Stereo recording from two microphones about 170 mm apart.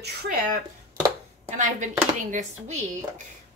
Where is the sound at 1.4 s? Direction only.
45° right (ahead or behind).